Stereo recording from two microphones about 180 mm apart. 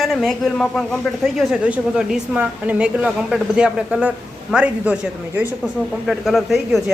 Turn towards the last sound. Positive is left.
turn(degrees=0)  # may be behind; listen again after turning